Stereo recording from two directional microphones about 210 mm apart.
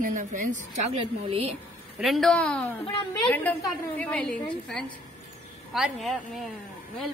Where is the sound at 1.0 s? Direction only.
25° right (ahead or behind).